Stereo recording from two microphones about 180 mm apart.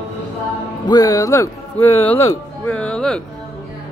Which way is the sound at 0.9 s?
20° left (ahead or behind).